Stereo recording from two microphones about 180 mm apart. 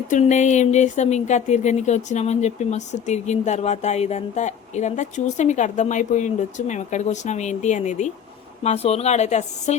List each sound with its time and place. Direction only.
0.1 s speech: 40° left (ahead or behind)